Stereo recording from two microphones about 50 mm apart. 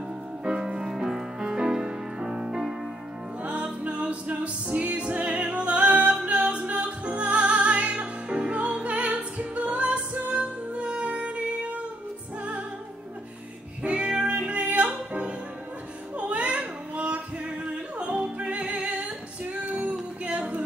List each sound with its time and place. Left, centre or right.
0.5 s music: centre
3.4 s music: right
13.8 s music: right
16.2 s a sound: right
17.6 s music: right